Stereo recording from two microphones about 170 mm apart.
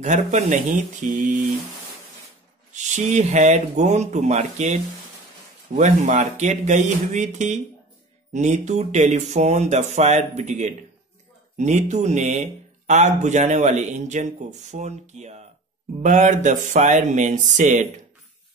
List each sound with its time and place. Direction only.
0.0 s speech: 45° right (ahead or behind)
2.7 s speech: 45° right (ahead or behind)
5.8 s speech: 45° right (ahead or behind)